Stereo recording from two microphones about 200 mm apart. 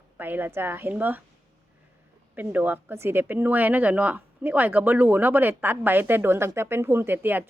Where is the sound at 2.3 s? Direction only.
10° right (ahead or behind).